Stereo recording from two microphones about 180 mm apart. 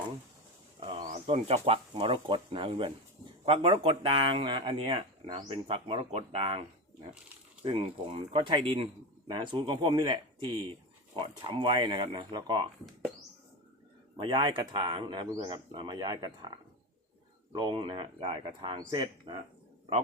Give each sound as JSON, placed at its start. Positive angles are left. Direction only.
{"t": 0.8, "sound": "bird", "side_deg": -30}
{"t": 1.0, "sound": "speech", "side_deg": -35}
{"t": 7.6, "sound": "speech", "side_deg": -30}
{"t": 14.2, "sound": "speech", "side_deg": -25}
{"t": 17.5, "sound": "speech", "side_deg": -25}